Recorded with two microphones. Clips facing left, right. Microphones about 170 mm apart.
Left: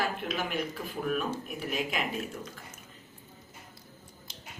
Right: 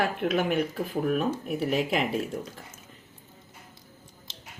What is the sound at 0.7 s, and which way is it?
Speech, 35° right (ahead or behind).